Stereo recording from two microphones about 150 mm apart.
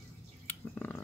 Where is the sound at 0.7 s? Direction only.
10° left (ahead or behind).